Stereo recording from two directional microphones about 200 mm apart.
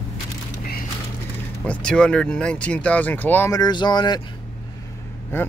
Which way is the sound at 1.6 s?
5° left (ahead or behind).